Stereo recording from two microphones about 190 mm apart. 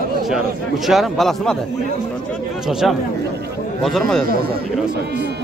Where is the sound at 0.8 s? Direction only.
Centre (ahead or behind).